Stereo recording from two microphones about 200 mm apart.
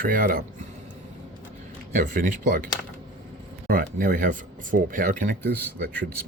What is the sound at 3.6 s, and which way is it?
Speech, 45° right (ahead or behind).